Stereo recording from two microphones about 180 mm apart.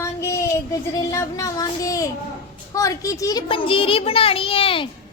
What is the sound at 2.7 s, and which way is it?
A child's voice, 20° left (ahead or behind).